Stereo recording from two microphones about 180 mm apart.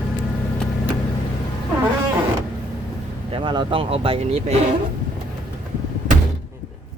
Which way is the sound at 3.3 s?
25° right (ahead or behind).